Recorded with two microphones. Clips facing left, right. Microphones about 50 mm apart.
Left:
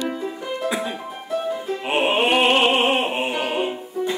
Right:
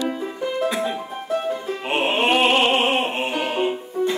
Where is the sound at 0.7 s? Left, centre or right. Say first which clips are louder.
Right 2 dB; centre.